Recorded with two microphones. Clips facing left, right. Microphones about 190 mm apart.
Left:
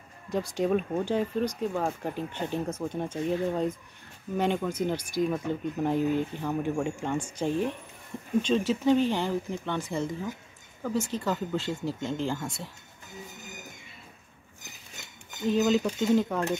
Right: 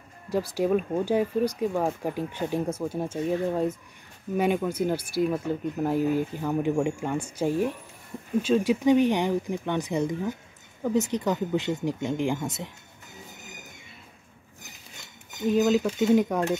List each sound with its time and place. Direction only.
0.6 s speech: 5° right (ahead or behind)
15.4 s speech: 5° right (ahead or behind)